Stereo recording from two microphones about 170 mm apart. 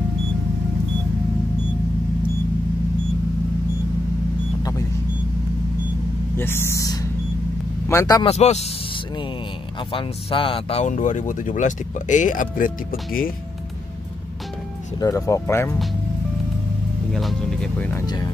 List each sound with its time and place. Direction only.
6.3 s vehicle: 15° left (ahead or behind)
7.9 s speech: 20° left (ahead or behind)
8.3 s speech: 40° left (ahead or behind)
9.9 s speech: 30° left (ahead or behind); by 12.7 s 50° left (ahead or behind)
15.0 s speech: 20° left (ahead or behind)
17.1 s speech: centre (ahead or behind)
18.0 s speech: 25° left (ahead or behind)